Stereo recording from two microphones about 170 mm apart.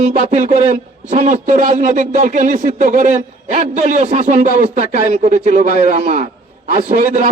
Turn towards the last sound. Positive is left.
turn(degrees=-45)  # may be behind; listen again after turning